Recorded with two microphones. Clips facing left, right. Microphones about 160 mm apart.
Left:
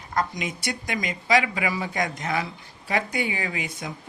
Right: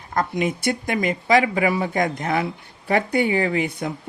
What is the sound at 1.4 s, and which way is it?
Speech, 40° right (ahead or behind).